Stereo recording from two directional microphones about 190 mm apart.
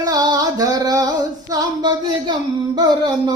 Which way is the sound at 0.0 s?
20° right (ahead or behind).